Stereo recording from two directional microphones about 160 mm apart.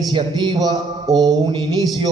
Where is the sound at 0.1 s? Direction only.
30° right (ahead or behind).